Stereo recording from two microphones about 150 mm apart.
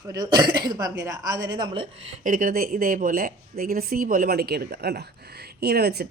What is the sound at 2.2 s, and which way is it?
Speech, 65° right (ahead or behind).